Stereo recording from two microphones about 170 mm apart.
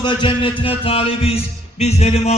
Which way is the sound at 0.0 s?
30° left (ahead or behind).